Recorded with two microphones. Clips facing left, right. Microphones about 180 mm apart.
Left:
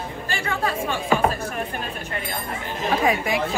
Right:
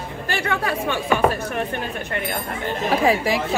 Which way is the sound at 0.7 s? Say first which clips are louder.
Even; 65° right (ahead or behind).